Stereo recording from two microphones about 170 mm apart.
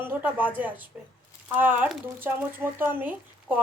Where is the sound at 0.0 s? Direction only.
10° right (ahead or behind).